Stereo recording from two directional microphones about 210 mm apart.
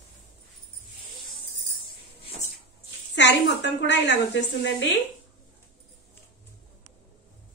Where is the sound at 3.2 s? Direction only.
55° left (ahead or behind).